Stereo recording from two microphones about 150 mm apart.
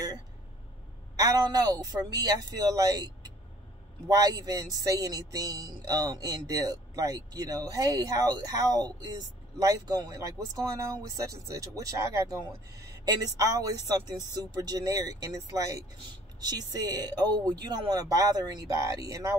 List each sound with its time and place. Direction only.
1.1 s speech: 25° right (ahead or behind)
4.1 s speech: 25° right (ahead or behind)